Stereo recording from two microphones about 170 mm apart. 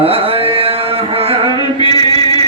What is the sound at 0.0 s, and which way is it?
Carnatic music, 35° right (ahead or behind).